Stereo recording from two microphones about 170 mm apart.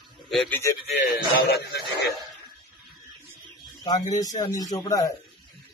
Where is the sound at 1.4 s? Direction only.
65° left (ahead or behind).